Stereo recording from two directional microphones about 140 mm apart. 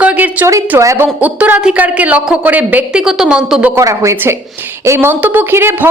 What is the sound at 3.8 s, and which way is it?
A woman's voice, 20° right (ahead or behind).